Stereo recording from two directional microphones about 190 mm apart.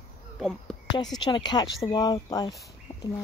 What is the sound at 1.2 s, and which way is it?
Speech, 25° left (ahead or behind).